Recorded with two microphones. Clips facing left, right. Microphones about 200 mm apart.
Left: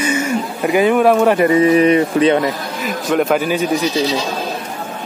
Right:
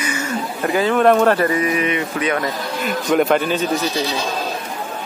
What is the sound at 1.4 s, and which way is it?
Speech, 25° left (ahead or behind).